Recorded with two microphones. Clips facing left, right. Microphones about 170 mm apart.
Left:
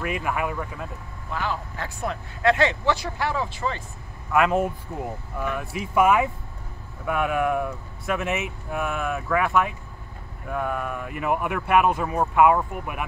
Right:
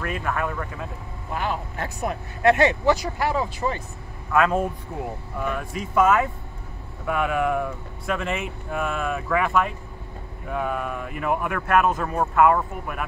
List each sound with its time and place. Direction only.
0.0 s speech: 10° left (ahead or behind)
1.3 s speech: 20° right (ahead or behind)
4.3 s speech: 5° left (ahead or behind)